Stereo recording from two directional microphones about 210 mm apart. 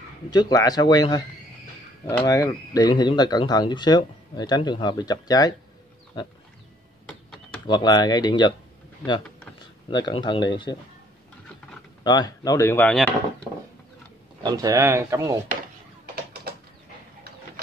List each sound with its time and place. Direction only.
0.3 s speech: 20° left (ahead or behind)
7.6 s speech: 20° left (ahead or behind)
9.8 s speech: 20° left (ahead or behind)
12.0 s speech: 20° left (ahead or behind)
14.4 s speech: 15° right (ahead or behind)